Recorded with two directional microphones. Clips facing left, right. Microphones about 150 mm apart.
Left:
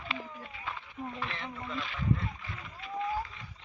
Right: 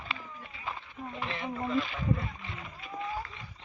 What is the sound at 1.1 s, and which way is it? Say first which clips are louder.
Speech: right 7 dB; 15° right (ahead or behind).